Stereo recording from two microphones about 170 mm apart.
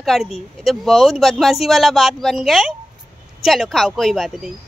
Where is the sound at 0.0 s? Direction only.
Centre (ahead or behind).